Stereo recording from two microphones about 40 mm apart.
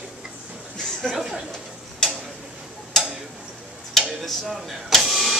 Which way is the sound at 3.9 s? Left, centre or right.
Centre.